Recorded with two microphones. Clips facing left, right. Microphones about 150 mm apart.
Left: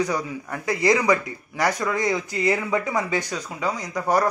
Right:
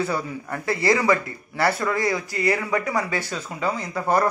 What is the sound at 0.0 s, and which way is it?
Speech, 15° left (ahead or behind).